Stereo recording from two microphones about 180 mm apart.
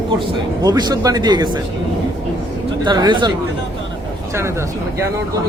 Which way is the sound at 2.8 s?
25° right (ahead or behind).